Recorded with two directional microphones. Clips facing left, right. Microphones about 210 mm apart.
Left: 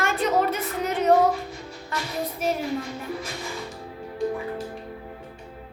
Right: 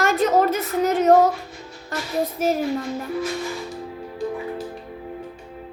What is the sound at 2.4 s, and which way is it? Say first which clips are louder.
Speech: right 4 dB; 45° right (ahead or behind).